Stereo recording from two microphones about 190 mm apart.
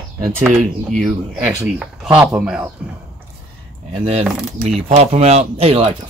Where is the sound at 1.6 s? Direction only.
5° right (ahead or behind).